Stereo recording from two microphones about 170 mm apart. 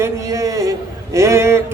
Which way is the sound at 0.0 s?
20° right (ahead or behind).